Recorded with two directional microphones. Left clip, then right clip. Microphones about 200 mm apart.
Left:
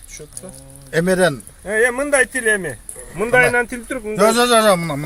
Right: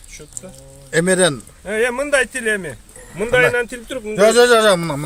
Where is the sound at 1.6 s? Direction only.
25° left (ahead or behind).